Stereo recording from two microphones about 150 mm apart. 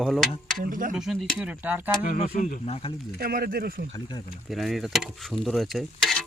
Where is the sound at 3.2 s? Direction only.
75° right (ahead or behind); by 3.9 s 90° right.